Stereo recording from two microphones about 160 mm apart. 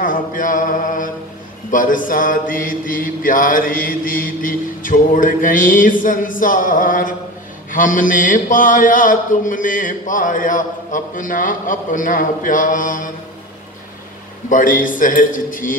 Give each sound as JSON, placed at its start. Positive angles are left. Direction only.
{"t": 0.0, "sound": "mantra", "side_deg": 55}
{"t": 14.5, "sound": "mantra", "side_deg": 55}